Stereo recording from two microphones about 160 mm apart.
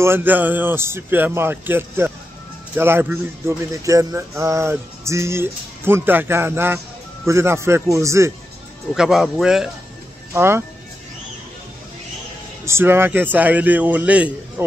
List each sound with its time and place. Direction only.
0.0 s speech: 15° right (ahead or behind)
8.9 s speech: 5° right (ahead or behind)
10.3 s speech: 15° right (ahead or behind)
12.6 s speech: 15° right (ahead or behind)